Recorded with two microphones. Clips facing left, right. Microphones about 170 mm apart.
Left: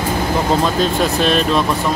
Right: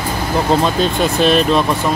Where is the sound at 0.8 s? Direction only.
Centre (ahead or behind).